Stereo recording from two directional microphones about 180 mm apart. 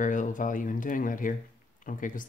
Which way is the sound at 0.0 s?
45° left (ahead or behind).